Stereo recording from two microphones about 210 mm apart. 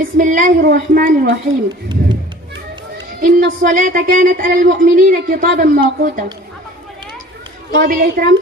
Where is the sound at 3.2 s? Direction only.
40° right (ahead or behind).